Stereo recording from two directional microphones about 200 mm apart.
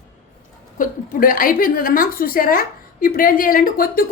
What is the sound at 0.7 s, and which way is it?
A woman's voice, 45° left (ahead or behind).